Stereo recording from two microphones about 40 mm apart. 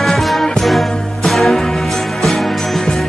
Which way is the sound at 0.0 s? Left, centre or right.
Centre.